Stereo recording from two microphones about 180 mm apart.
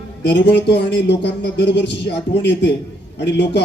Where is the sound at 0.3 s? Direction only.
70° left (ahead or behind).